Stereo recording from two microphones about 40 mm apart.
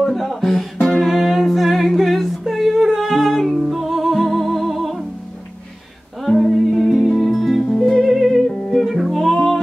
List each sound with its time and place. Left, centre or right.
0.0 s music: centre
6.2 s music: centre
7.6 s music: left
8.1 s music: centre
9.3 s music: centre